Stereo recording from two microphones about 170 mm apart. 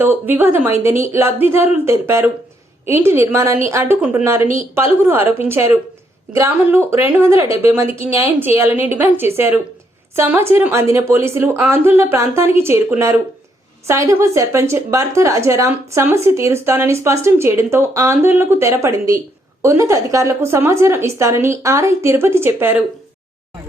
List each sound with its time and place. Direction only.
0.0 s a woman's voice: 10° right (ahead or behind)